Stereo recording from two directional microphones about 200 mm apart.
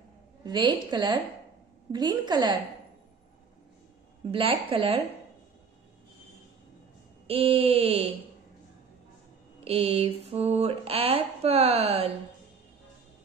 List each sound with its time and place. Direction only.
0.5 s speech: 20° right (ahead or behind)
4.3 s speech: 25° right (ahead or behind)
7.2 s speech: 30° right (ahead or behind)
9.7 s speech: 30° right (ahead or behind)